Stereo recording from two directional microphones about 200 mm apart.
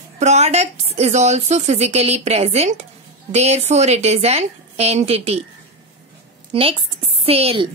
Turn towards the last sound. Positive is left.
turn(degrees=-30)  # may be behind; listen again after turning